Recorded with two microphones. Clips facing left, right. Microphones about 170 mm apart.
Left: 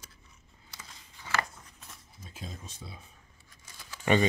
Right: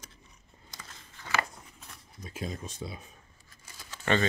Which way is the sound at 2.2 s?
75° right (ahead or behind).